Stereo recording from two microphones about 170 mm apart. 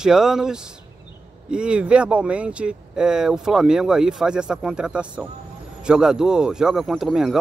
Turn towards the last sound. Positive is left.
turn(degrees=0)  # may be behind; listen again after turning